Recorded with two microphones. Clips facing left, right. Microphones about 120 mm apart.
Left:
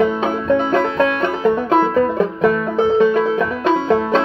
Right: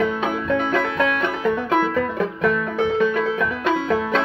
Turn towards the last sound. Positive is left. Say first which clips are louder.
# left 5 dB
turn(degrees=30)  # may be behind; listen again after turning